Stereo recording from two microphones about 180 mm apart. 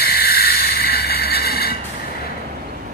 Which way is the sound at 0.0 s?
60° left (ahead or behind).